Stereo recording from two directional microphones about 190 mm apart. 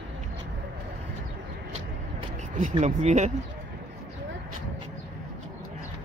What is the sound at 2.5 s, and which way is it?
Speech, 40° right (ahead or behind).